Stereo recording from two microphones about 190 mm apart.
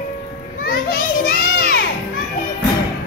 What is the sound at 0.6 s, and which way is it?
Children playing, 50° left (ahead or behind).